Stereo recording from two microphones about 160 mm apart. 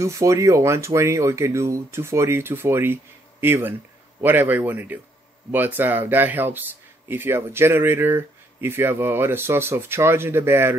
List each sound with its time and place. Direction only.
0.0 s speech: 20° right (ahead or behind)